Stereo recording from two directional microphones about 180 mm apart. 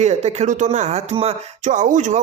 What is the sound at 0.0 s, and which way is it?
Speech, 40° right (ahead or behind).